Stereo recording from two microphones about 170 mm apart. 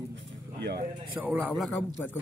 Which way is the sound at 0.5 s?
75° right (ahead or behind).